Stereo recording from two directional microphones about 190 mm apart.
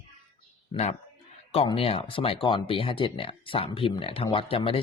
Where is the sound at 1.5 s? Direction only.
30° left (ahead or behind).